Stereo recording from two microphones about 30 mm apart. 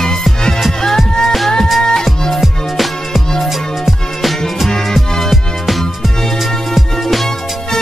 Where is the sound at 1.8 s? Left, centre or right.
Left.